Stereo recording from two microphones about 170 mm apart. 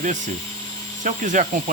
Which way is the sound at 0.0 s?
45° right (ahead or behind).